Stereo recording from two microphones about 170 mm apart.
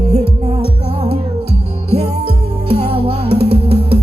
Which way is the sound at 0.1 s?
40° right (ahead or behind).